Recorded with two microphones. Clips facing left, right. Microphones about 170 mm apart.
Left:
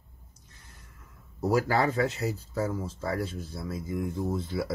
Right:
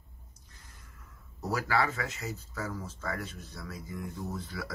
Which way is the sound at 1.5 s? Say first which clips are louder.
Left 5 dB; 40° left (ahead or behind).